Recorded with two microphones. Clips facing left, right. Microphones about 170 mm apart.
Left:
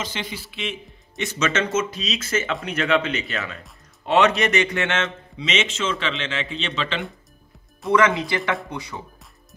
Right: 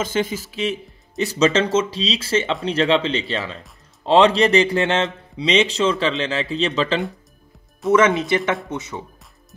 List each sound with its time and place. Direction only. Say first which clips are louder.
0.0 s a man's voice: right 9 dB; 45° right (ahead or behind)
7.9 s speech: right 3 dB; 20° right (ahead or behind)